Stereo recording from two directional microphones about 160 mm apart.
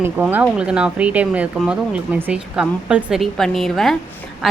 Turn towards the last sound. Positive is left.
turn(degrees=-5)  # may be behind; listen again after turning